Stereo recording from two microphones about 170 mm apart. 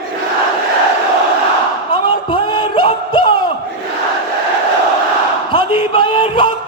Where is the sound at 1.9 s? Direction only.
25° left (ahead or behind).